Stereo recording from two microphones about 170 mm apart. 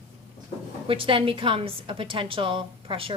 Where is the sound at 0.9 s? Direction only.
30° right (ahead or behind).